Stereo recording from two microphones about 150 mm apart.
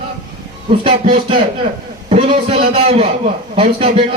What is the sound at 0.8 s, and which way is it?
Speech, 35° right (ahead or behind).